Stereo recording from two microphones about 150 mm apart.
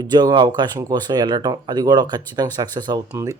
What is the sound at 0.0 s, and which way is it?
Speech, 30° right (ahead or behind).